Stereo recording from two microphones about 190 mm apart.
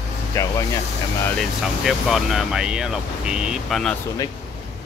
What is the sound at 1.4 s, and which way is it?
Speech, centre (ahead or behind).